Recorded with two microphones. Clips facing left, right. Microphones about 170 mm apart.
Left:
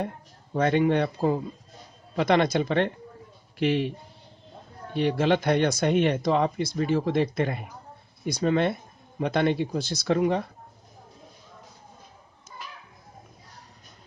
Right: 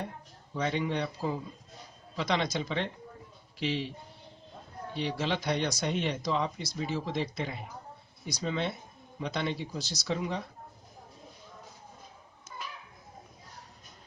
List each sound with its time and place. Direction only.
0.5 s speech: 55° left (ahead or behind)
4.9 s speech: 55° left (ahead or behind)